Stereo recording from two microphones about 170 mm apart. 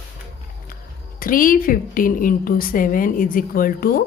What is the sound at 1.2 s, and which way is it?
A woman's voice, 55° left (ahead or behind).